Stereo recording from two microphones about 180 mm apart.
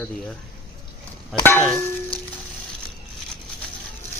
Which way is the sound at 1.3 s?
Centre (ahead or behind).